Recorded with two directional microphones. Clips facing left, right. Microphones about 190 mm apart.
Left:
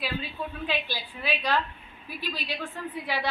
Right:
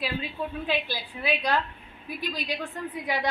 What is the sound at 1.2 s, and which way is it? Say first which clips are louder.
A man's voice: right 1 dB; 15° right (ahead or behind).